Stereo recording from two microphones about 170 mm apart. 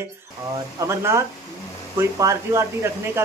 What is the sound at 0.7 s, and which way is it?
Speech, 15° right (ahead or behind).